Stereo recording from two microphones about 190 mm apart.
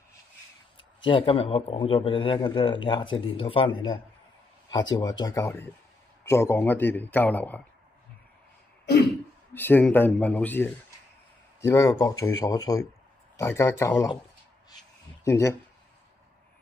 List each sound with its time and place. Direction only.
0.7 s a man's voice: 25° left (ahead or behind); by 7.6 s 10° left (ahead or behind)
9.5 s a man's voice: 10° left (ahead or behind)
15.2 s a man's voice: 15° left (ahead or behind)